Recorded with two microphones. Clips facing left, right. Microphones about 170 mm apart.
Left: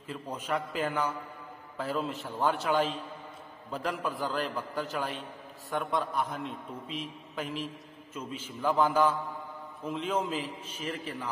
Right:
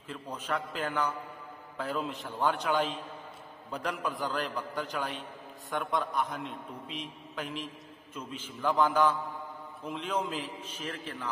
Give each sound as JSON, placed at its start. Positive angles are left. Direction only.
{"t": 0.1, "sound": "a man's voice", "side_deg": 10}